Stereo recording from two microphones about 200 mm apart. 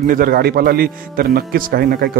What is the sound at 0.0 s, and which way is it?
Speech, 45° right (ahead or behind).